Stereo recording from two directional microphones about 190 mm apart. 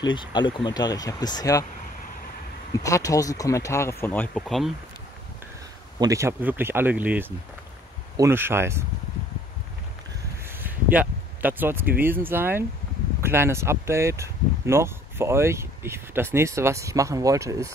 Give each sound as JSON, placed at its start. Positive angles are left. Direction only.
{"t": 0.0, "sound": "speech", "side_deg": 25}
{"t": 2.8, "sound": "speech", "side_deg": 15}
{"t": 5.9, "sound": "speech", "side_deg": -15}
{"t": 10.6, "sound": "a sound", "side_deg": -10}
{"t": 12.0, "sound": "speech", "side_deg": -10}